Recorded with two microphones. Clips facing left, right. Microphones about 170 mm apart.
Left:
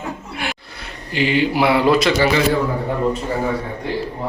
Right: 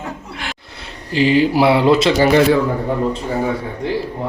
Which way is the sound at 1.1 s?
35° right (ahead or behind).